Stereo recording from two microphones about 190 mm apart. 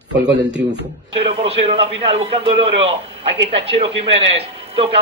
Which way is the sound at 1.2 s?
30° right (ahead or behind).